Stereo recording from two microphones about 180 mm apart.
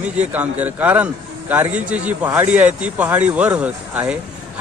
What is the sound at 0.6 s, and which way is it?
Speech, 10° right (ahead or behind).